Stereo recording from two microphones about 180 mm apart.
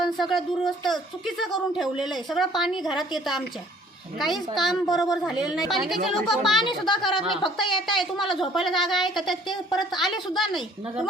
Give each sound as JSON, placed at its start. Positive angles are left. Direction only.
{"t": 0.0, "sound": "speech", "side_deg": 0}
{"t": 6.6, "sound": "a woman's voice", "side_deg": 25}
{"t": 7.9, "sound": "speech", "side_deg": 0}
{"t": 9.5, "sound": "a woman's voice", "side_deg": 25}
{"t": 10.0, "sound": "speech", "side_deg": 0}